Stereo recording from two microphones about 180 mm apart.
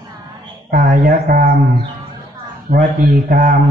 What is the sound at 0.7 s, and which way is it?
Speech, 50° right (ahead or behind).